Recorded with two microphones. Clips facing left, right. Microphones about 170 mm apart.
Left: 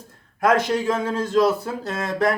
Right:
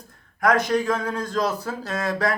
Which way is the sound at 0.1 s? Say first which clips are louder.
Left 2 dB; 25° left (ahead or behind).